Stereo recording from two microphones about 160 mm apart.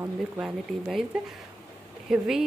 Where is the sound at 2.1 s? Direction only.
5° right (ahead or behind).